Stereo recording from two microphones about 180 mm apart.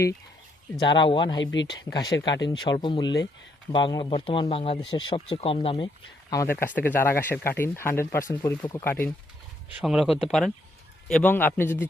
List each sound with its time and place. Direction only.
0.9 s speech: 25° left (ahead or behind)
6.3 s speech: 15° left (ahead or behind)
9.8 s speech: 5° right (ahead or behind)
11.1 s speech: 10° left (ahead or behind)